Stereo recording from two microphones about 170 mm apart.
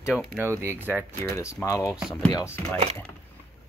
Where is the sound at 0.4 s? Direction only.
15° right (ahead or behind).